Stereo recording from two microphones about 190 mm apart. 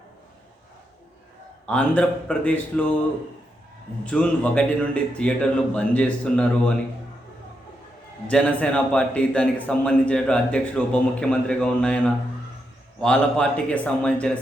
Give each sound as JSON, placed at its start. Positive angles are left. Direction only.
{"t": 1.6, "sound": "a man's voice", "side_deg": 5}
{"t": 4.0, "sound": "a man's voice", "side_deg": 5}
{"t": 8.3, "sound": "a man's voice", "side_deg": 5}